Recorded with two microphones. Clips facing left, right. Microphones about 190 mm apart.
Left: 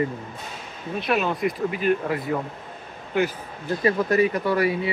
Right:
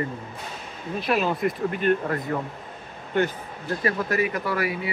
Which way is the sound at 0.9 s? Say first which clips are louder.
Even; centre (ahead or behind).